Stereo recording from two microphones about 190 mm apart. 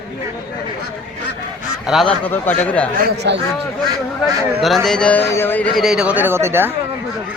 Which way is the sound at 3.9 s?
20° right (ahead or behind).